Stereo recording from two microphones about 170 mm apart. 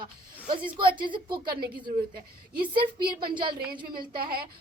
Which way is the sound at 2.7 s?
30° right (ahead or behind).